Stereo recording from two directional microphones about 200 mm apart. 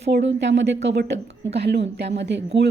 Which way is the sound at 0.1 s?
60° right (ahead or behind).